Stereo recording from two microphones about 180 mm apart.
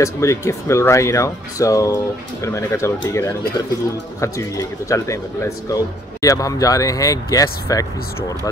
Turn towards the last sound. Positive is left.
turn(degrees=20)  # may be behind; listen again after turning